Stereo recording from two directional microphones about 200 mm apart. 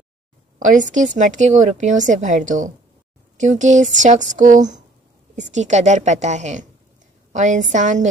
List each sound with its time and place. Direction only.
0.6 s a woman's voice: 40° right (ahead or behind)